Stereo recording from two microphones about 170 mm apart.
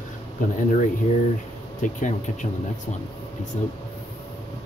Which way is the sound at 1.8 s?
50° left (ahead or behind).